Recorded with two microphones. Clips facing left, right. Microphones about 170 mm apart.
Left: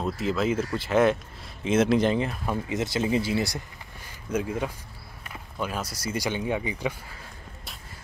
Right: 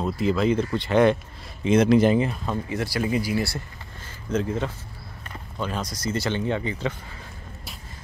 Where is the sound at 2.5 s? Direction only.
20° left (ahead or behind).